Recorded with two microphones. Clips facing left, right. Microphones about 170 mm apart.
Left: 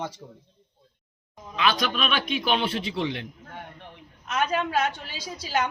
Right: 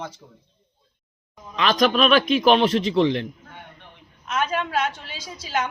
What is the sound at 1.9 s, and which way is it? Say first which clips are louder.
Speech: right 9 dB; 55° right (ahead or behind).